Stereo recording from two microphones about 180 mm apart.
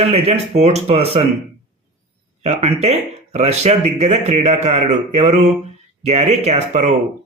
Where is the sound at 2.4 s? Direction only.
35° right (ahead or behind).